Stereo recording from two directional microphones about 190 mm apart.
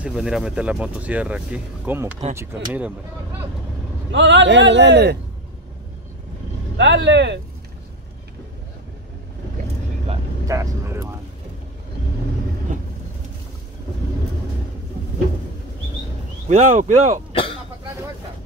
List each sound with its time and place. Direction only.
0.0 s speech: centre (ahead or behind)
4.1 s speech: 70° right (ahead or behind)
6.8 s speech: 70° right (ahead or behind)
10.4 s speech: 15° right (ahead or behind)
16.4 s speech: 40° right (ahead or behind)
17.3 s cough: 25° left (ahead or behind)